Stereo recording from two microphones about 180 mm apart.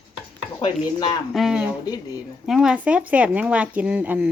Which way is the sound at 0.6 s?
25° left (ahead or behind).